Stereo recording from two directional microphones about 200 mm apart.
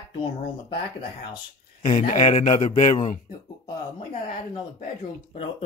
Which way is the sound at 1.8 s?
35° left (ahead or behind).